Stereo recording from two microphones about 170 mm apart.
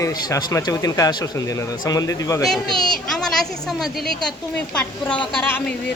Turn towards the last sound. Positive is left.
turn(degrees=10)  # may be behind; listen again after turning